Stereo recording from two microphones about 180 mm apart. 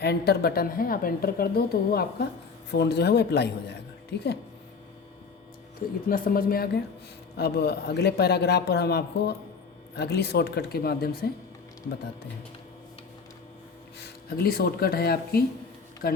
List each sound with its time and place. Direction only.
0.0 s a woman's voice: 65° left (ahead or behind)
6.1 s a woman's voice: 55° left (ahead or behind)
14.0 s a woman's voice: 60° left (ahead or behind)